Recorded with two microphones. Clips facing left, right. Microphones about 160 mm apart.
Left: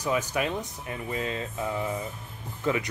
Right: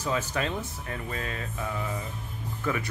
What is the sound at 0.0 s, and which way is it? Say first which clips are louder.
Speech: left 2 dB; 15° left (ahead or behind).